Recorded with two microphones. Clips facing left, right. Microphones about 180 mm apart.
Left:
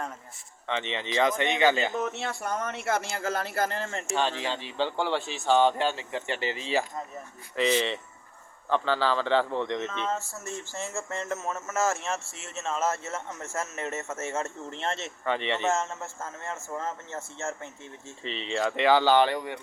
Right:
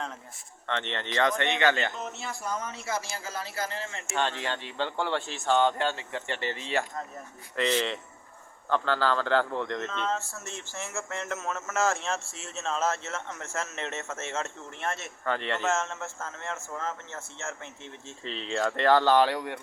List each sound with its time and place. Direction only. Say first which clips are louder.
0.7 s a man's voice: left 2 dB; 5° left (ahead or behind)
2.0 s speech: left 6 dB; 70° left (ahead or behind); by 4.0 s 50° left (ahead or behind)
4.8 s a man's voice: left 2 dB; 10° left (ahead or behind)
7.5 s speech: left 2 dB; 5° left (ahead or behind)
10.8 s a man's voice: left 1 dB; 15° left (ahead or behind)
15.2 s speech: left 2 dB; centre (ahead or behind)
15.7 s a man's voice: left 1 dB; 15° left (ahead or behind)
18.2 s speech: left 1 dB; centre (ahead or behind)